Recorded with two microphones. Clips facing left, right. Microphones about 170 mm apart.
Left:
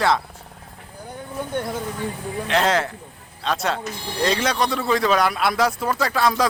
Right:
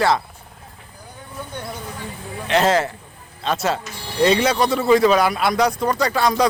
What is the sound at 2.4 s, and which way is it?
A man's voice, centre (ahead or behind).